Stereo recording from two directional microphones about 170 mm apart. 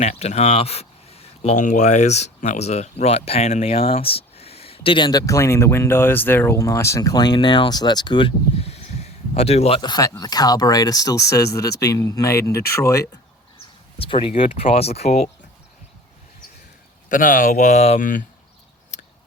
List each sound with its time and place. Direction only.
0.0 s speech: 40° left (ahead or behind); by 13.1 s 20° left (ahead or behind)
14.0 s speech: 30° left (ahead or behind)
17.1 s speech: 50° left (ahead or behind)
18.9 s a sound: 45° left (ahead or behind)